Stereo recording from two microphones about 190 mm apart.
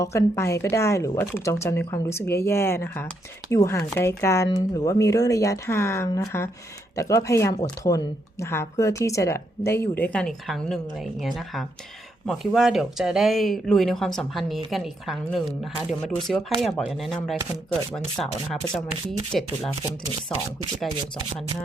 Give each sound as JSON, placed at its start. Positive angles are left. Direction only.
{"t": 0.0, "sound": "speech", "side_deg": 15}
{"t": 19.3, "sound": "speech", "side_deg": 0}